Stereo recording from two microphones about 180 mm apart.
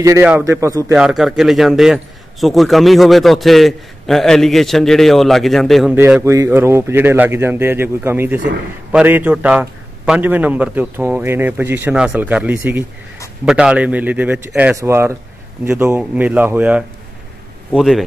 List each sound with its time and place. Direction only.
0.5 s a man's voice: 20° right (ahead or behind)
0.9 s a man's voice: 5° right (ahead or behind)
5.9 s a man's voice: 10° right (ahead or behind)